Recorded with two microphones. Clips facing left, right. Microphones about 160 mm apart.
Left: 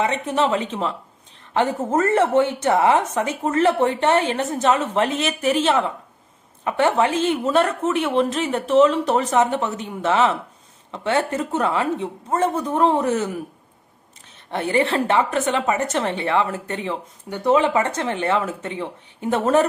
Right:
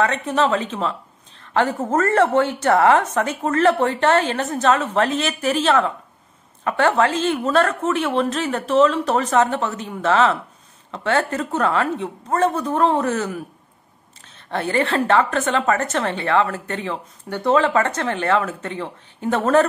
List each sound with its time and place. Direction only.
0.0 s a woman's voice: 20° left (ahead or behind)
14.5 s a woman's voice: 15° left (ahead or behind)